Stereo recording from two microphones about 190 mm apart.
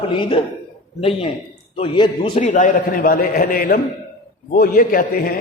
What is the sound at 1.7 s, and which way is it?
Speech, 25° left (ahead or behind).